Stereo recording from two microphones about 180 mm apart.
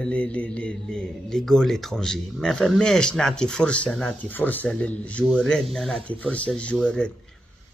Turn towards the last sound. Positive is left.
turn(degrees=5)  # may be behind; listen again after turning